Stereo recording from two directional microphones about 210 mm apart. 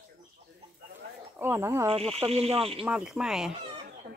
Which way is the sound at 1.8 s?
30° right (ahead or behind).